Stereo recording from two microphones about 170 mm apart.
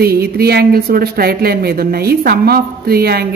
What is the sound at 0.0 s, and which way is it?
A woman's voice, 65° right (ahead or behind).